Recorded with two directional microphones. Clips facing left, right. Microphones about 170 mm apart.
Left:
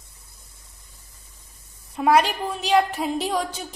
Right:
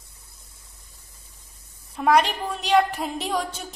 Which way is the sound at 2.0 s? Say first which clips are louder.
Left 1 dB; 5° left (ahead or behind).